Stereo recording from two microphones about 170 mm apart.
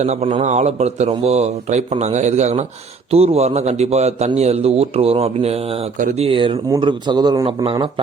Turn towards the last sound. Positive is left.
turn(degrees=-30)  # may be behind; listen again after turning